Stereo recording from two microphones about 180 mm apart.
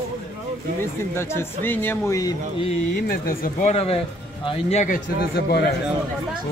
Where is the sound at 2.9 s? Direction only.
55° left (ahead or behind); by 5.0 s 40° left (ahead or behind).